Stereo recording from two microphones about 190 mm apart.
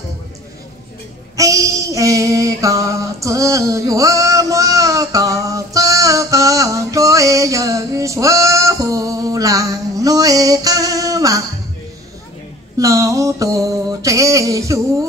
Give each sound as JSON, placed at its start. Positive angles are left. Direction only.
{"t": 1.3, "sound": "mantra", "side_deg": -15}
{"t": 12.7, "sound": "mantra", "side_deg": -15}